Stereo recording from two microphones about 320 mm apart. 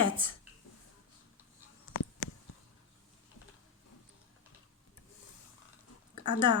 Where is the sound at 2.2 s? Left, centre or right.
Left.